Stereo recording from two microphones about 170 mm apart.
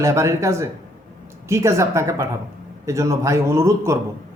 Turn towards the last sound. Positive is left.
turn(degrees=-15)  # may be behind; listen again after turning